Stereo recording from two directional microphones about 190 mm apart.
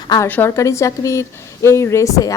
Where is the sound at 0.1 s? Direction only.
10° left (ahead or behind).